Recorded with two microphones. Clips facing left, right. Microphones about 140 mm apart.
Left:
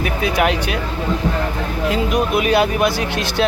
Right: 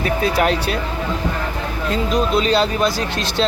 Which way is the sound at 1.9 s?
15° left (ahead or behind).